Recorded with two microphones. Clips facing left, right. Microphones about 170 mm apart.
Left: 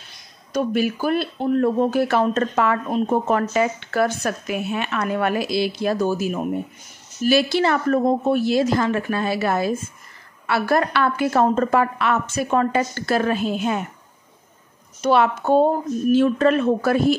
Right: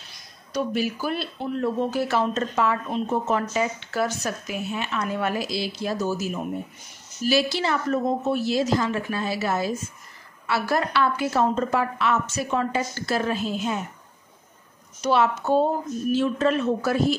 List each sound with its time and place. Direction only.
0.5 s speech: 55° left (ahead or behind)
15.0 s speech: 55° left (ahead or behind)